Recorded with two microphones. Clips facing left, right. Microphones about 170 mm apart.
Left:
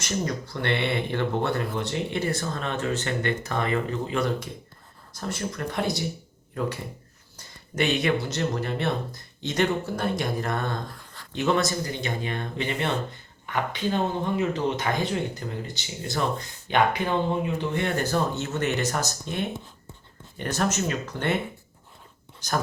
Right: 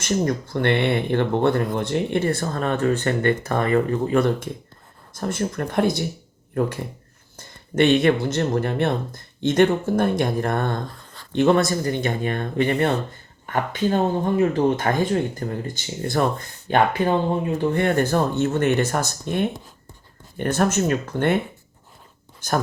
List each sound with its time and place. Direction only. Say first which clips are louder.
0.3 s speech: right 6 dB; 50° right (ahead or behind)
22.4 s speech: right 5 dB; 50° right (ahead or behind)